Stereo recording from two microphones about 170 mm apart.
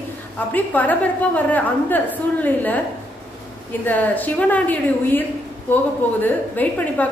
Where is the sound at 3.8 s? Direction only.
10° left (ahead or behind).